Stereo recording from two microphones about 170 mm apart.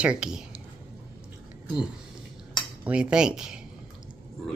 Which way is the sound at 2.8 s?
5° right (ahead or behind).